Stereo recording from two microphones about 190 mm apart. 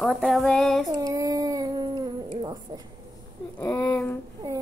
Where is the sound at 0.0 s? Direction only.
Centre (ahead or behind).